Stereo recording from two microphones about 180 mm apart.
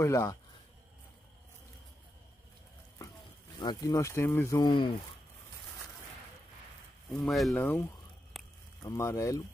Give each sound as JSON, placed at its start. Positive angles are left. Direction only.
{"t": 0.0, "sound": "speech", "side_deg": 15}
{"t": 3.5, "sound": "speech", "side_deg": 20}
{"t": 7.1, "sound": "speech", "side_deg": 0}
{"t": 8.3, "sound": "a sound", "side_deg": 0}
{"t": 8.8, "sound": "speech", "side_deg": 15}